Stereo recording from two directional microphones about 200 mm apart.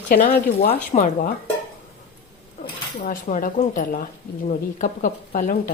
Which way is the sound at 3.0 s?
40° left (ahead or behind).